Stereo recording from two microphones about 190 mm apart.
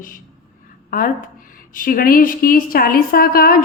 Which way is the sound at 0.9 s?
45° left (ahead or behind).